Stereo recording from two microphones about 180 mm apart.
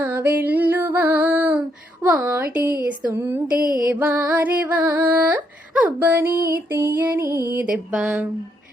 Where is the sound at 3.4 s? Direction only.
50° right (ahead or behind).